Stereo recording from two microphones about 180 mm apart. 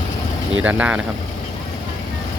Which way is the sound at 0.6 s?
10° right (ahead or behind).